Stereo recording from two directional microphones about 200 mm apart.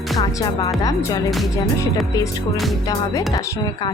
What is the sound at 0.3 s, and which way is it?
Speech, 15° left (ahead or behind).